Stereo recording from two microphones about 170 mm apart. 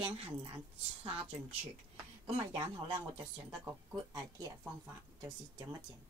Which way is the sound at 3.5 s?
15° right (ahead or behind).